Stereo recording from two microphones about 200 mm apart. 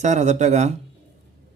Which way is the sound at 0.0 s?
35° right (ahead or behind).